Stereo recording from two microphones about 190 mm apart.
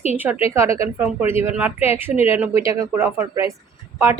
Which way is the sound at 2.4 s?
15° right (ahead or behind).